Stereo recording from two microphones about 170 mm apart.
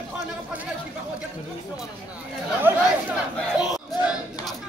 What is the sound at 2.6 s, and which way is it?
Chatter, 10° right (ahead or behind).